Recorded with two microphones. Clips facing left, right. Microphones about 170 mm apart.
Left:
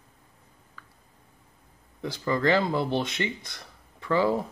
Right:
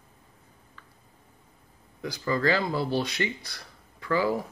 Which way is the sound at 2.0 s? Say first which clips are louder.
Left 1 dB; 25° left (ahead or behind).